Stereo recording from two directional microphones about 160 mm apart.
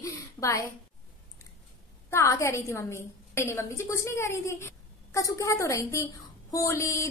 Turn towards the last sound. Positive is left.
turn(degrees=20)  # may be behind; listen again after turning